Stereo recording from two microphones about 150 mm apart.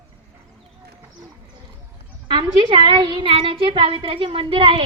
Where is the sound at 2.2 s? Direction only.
35° right (ahead or behind).